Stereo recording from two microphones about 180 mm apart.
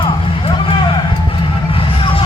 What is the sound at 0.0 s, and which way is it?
Vehicle, 30° left (ahead or behind).